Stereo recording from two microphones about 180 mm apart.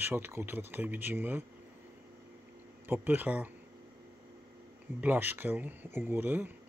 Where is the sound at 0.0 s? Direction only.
10° right (ahead or behind).